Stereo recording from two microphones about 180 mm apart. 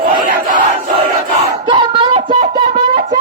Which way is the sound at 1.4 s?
25° right (ahead or behind).